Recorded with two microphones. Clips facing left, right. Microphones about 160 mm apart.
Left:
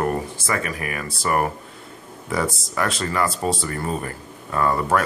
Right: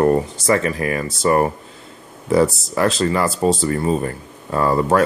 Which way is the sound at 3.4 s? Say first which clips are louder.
Right 7 dB; 30° right (ahead or behind).